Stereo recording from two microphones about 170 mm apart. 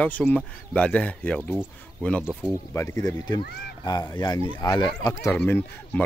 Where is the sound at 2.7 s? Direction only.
20° left (ahead or behind).